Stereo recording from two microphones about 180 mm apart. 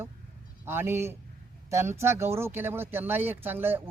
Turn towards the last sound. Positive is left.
turn(degrees=-10)  # may be behind; listen again after turning